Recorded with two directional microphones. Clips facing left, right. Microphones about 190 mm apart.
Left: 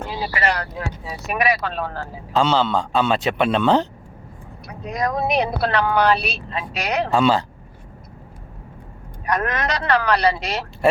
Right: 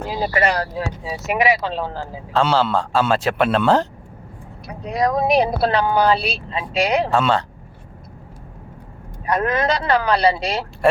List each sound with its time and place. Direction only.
0.1 s speech: 45° right (ahead or behind)
0.8 s speech: 20° right (ahead or behind)
2.4 s speech: 5° right (ahead or behind)
4.9 s a woman's voice: 30° right (ahead or behind)
7.1 s speech: centre (ahead or behind)
9.3 s speech: 30° right (ahead or behind)